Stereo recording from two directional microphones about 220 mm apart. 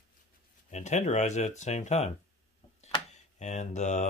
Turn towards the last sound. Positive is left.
turn(degrees=35)  # may be behind; listen again after turning